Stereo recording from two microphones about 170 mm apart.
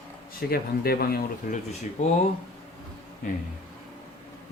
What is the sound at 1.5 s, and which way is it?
Speech, 50° left (ahead or behind).